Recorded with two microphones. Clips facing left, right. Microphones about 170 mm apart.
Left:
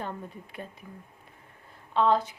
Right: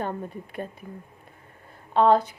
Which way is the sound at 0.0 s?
50° right (ahead or behind).